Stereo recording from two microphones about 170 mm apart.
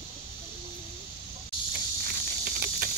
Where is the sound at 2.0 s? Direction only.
55° right (ahead or behind).